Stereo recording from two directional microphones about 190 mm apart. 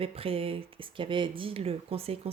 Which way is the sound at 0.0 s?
30° right (ahead or behind).